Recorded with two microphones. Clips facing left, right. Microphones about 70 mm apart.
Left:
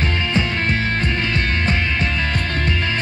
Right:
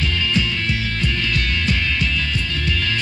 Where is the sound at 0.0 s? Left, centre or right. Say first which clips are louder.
Left 1 dB; left.